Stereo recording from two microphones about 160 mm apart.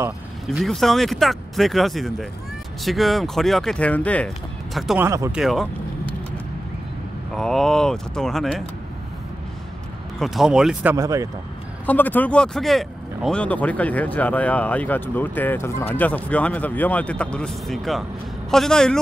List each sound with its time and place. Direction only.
0.5 s speech: centre (ahead or behind)
4.7 s speech: centre (ahead or behind)
5.0 s speech: 20° right (ahead or behind)
5.3 s speech: centre (ahead or behind)
7.3 s speech: 5° left (ahead or behind)
10.1 s speech: centre (ahead or behind)
11.0 s speech: 20° right (ahead or behind)
11.8 s speech: 10° left (ahead or behind)